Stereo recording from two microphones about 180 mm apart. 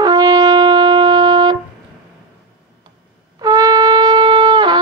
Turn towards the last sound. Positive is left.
turn(degrees=-25)  # may be behind; listen again after turning